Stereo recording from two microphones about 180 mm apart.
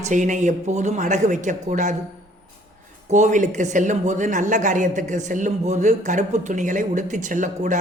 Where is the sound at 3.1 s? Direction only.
40° right (ahead or behind).